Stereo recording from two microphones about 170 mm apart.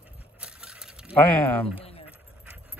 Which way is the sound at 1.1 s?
10° left (ahead or behind).